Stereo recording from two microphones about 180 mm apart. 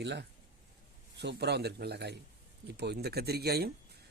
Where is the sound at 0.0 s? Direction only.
75° right (ahead or behind).